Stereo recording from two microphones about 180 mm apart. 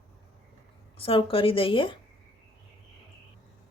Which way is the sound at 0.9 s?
30° left (ahead or behind).